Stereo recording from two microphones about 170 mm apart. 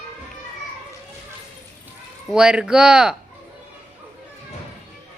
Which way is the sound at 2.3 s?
5° right (ahead or behind).